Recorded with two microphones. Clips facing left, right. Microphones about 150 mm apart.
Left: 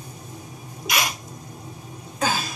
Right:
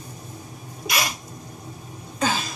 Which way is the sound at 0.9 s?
Centre (ahead or behind).